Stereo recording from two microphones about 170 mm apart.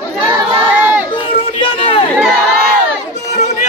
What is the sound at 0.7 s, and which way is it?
Crowd, 10° right (ahead or behind).